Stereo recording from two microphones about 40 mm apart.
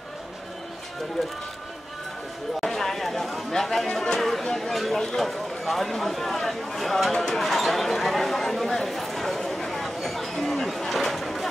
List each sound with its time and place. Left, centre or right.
2.6 s speech: centre
7.1 s speech: centre
7.3 s speech: centre
9.9 s chatter: centre